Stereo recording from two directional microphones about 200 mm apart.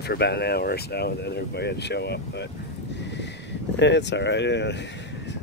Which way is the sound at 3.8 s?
60° left (ahead or behind).